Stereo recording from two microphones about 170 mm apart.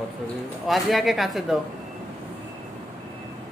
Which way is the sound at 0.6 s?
Centre (ahead or behind).